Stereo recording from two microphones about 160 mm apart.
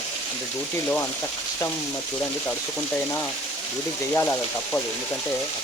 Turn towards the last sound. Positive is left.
turn(degrees=15)  # may be behind; listen again after turning